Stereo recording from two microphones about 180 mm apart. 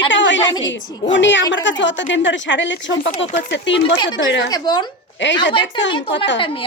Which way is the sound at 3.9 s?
25° left (ahead or behind).